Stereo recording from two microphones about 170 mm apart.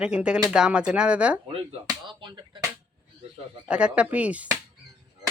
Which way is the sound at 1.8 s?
30° right (ahead or behind).